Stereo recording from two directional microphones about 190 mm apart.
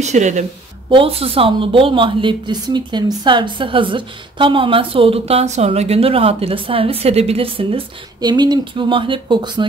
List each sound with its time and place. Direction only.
0.0 s a woman's voice: 40° right (ahead or behind)